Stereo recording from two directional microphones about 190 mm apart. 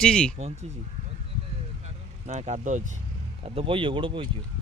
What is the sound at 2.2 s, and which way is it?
Speech, 40° right (ahead or behind).